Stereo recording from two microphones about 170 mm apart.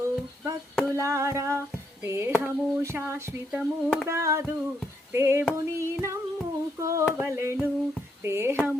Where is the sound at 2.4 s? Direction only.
15° right (ahead or behind).